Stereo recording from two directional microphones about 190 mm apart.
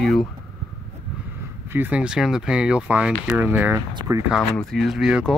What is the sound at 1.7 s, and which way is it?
Speech, 10° right (ahead or behind).